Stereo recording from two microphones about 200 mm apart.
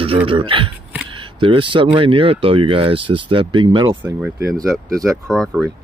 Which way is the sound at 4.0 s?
5° right (ahead or behind).